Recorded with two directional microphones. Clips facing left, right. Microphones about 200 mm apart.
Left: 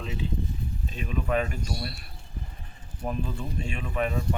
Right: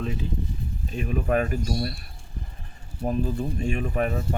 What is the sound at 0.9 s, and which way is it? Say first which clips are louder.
Speech: right 4 dB; 45° right (ahead or behind).